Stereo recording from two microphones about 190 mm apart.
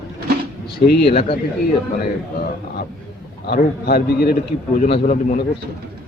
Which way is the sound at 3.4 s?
55° left (ahead or behind).